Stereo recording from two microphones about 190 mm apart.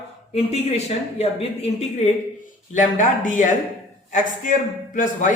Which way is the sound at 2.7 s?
45° left (ahead or behind).